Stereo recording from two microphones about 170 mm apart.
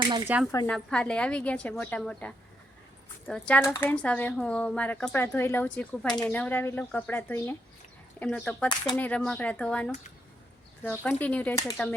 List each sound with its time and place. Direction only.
0.3 s speech: 10° right (ahead or behind)
0.7 s a woman's voice: 5° left (ahead or behind)